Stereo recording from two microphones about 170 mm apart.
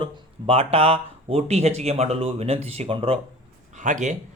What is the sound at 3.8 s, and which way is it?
Speech, 45° right (ahead or behind).